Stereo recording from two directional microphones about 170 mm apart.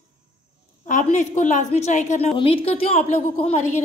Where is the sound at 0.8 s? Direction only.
45° left (ahead or behind).